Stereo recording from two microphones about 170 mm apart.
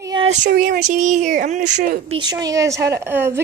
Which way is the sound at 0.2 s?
45° right (ahead or behind).